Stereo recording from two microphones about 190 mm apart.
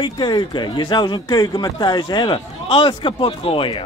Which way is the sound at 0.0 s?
25° left (ahead or behind).